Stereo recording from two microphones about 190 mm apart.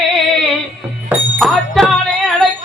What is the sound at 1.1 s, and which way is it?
Music, centre (ahead or behind).